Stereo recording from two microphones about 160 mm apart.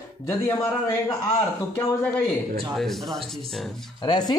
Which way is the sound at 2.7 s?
Centre (ahead or behind).